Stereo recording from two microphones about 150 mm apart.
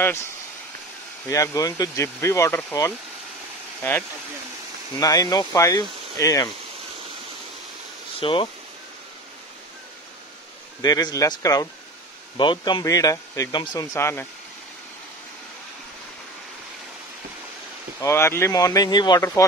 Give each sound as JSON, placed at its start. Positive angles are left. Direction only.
{"t": 1.3, "sound": "speech", "side_deg": 20}
{"t": 5.0, "sound": "speech", "side_deg": 25}
{"t": 8.2, "sound": "speech", "side_deg": 35}
{"t": 10.8, "sound": "speech", "side_deg": 25}
{"t": 13.9, "sound": "speech", "side_deg": 15}
{"t": 18.0, "sound": "speech", "side_deg": 15}